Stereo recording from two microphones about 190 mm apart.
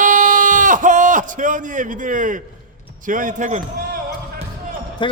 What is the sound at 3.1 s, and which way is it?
Basketball bounce, 45° right (ahead or behind).